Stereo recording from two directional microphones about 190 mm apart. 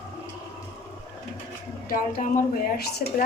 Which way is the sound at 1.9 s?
50° left (ahead or behind).